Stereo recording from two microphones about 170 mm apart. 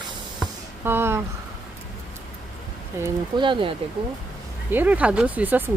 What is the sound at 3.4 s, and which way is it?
Speech, 30° right (ahead or behind).